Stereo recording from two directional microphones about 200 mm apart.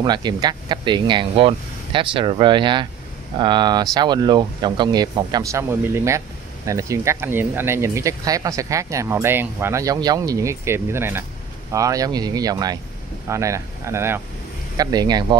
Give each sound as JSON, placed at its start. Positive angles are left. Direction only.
{"t": 0.0, "sound": "speech", "side_deg": -20}